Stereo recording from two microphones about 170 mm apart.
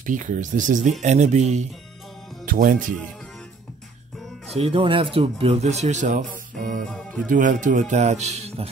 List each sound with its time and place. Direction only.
0.0 s speech: 50° right (ahead or behind)
2.4 s music: 55° right (ahead or behind)
4.6 s speech: 30° right (ahead or behind)
6.9 s music: 5° left (ahead or behind)
7.2 s speech: 50° right (ahead or behind)